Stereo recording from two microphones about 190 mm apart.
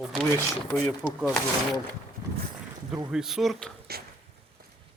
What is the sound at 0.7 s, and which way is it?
Speech, 10° left (ahead or behind).